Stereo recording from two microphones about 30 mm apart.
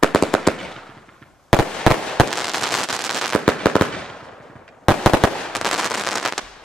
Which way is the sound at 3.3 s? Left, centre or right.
Left.